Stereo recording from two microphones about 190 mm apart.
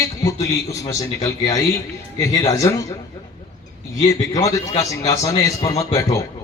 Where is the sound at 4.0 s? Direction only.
15° left (ahead or behind).